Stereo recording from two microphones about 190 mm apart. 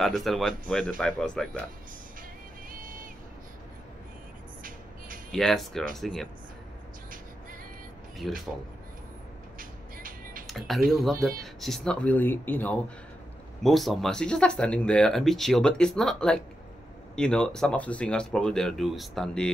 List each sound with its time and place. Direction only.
0.0 s speech: centre (ahead or behind)
2.7 s vehicle: 45° right (ahead or behind)
4.6 s music: 45° right (ahead or behind)
5.3 s speech: centre (ahead or behind)
8.2 s speech: centre (ahead or behind)
9.6 s music: 45° right (ahead or behind)
10.4 s music: centre (ahead or behind)
10.9 s speech: centre (ahead or behind)